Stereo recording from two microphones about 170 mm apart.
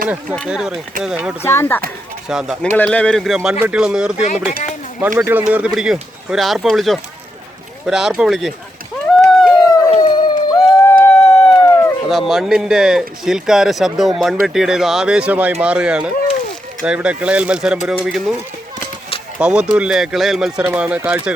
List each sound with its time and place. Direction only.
0.4 s speech: 5° right (ahead or behind)
1.4 s speech: 15° left (ahead or behind)
2.3 s speech: 5° right (ahead or behind)
2.7 s speech: 10° left (ahead or behind)
9.0 s a sound: centre (ahead or behind)
9.6 s howl: 20° left (ahead or behind)
9.9 s a sound: 25° left (ahead or behind)
12.0 s speech: centre (ahead or behind)
19.4 s speech: 5° right (ahead or behind)